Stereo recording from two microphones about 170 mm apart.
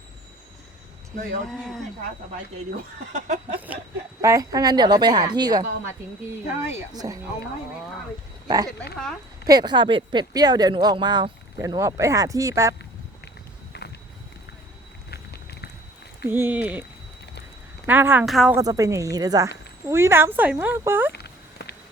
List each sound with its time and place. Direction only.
1.5 s speech: centre (ahead or behind)
3.7 s speech: 10° right (ahead or behind)
4.2 s speech: 20° right (ahead or behind)
8.4 s speech: 20° right (ahead or behind)
13.7 s walk: 75° left (ahead or behind)
15.1 s a sound: 70° left (ahead or behind)
16.2 s speech: 15° right (ahead or behind)
17.8 s speech: 10° right (ahead or behind)
18.5 s speech: 20° right (ahead or behind)
21.1 s a sound: 75° left (ahead or behind)